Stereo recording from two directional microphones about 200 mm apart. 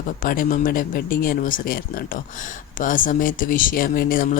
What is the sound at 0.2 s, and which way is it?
Speech, 45° left (ahead or behind).